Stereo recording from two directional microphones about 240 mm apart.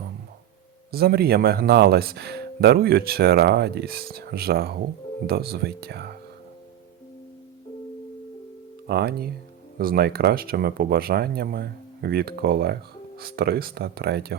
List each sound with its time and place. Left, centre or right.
0.9 s speech: right
8.9 s speech: right